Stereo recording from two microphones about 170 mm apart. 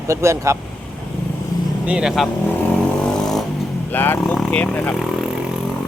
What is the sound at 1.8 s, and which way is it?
Speech, 5° right (ahead or behind).